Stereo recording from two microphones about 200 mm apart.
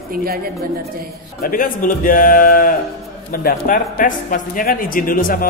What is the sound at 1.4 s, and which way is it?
Speech, 45° left (ahead or behind).